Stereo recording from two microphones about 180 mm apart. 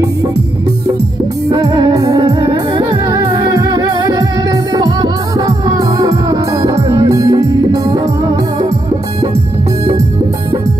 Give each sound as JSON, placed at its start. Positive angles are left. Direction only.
{"t": 1.5, "sound": "music", "side_deg": -20}